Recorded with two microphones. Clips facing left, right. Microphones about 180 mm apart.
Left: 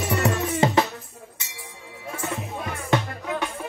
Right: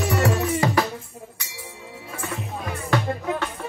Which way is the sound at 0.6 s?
25° left (ahead or behind).